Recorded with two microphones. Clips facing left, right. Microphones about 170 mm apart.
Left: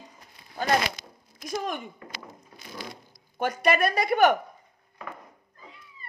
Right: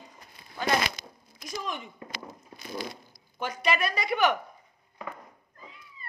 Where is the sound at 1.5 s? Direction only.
55° left (ahead or behind).